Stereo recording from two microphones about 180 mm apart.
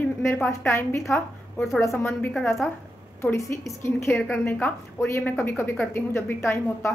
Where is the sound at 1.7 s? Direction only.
15° left (ahead or behind).